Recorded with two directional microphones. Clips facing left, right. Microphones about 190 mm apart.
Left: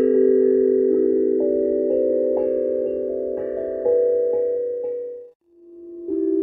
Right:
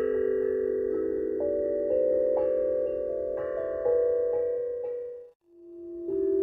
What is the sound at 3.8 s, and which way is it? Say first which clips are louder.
Music: left 7 dB; 30° left (ahead or behind).